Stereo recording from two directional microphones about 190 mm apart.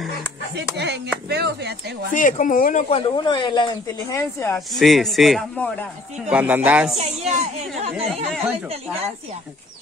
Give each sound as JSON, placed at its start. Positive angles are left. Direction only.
{"t": 0.6, "sound": "speech", "side_deg": -60}
{"t": 2.1, "sound": "speech", "side_deg": 45}
{"t": 4.6, "sound": "speech", "side_deg": 0}
{"t": 7.0, "sound": "speech", "side_deg": -35}